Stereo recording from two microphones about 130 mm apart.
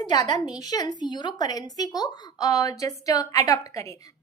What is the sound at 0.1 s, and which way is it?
A woman's voice, 30° left (ahead or behind).